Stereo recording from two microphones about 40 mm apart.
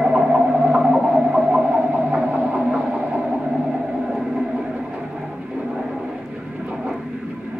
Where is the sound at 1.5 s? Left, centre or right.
Right.